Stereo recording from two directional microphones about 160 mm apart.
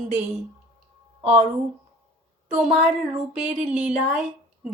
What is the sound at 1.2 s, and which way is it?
Speech, 45° right (ahead or behind).